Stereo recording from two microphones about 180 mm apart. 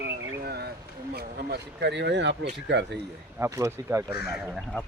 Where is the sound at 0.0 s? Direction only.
65° right (ahead or behind).